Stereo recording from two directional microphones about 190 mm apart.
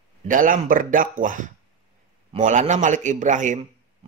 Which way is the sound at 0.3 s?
45° right (ahead or behind).